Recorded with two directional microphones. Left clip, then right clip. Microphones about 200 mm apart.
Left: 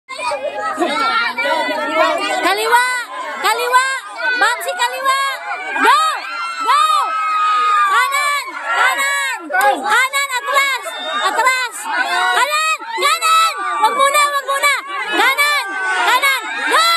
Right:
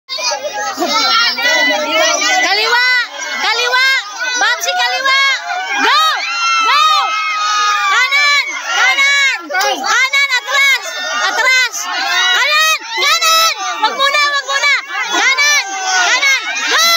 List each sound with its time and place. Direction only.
0.9 s children playing: 15° right (ahead or behind)
2.4 s a sound: centre (ahead or behind)
5.9 s run: centre (ahead or behind)
6.6 s crowd: centre (ahead or behind)
7.9 s run: centre (ahead or behind)
9.8 s a sound: centre (ahead or behind)